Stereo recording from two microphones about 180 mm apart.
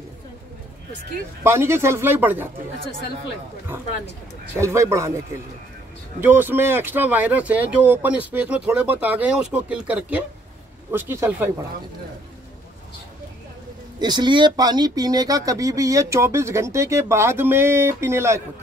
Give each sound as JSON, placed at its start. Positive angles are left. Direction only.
{"t": 1.4, "sound": "speech", "side_deg": -15}
{"t": 4.6, "sound": "speech", "side_deg": -15}
{"t": 6.2, "sound": "speech", "side_deg": -10}
{"t": 13.9, "sound": "speech", "side_deg": -25}